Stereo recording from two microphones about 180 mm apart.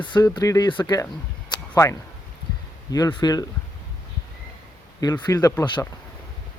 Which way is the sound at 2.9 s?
25° left (ahead or behind).